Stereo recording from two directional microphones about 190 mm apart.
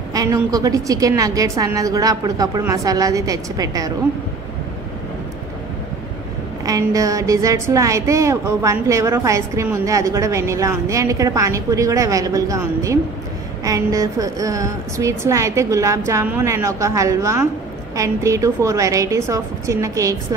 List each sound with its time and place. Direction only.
0.1 s a woman's voice: 20° right (ahead or behind)
6.6 s a woman's voice: 20° right (ahead or behind)